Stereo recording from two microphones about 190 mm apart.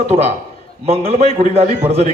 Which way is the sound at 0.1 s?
35° right (ahead or behind).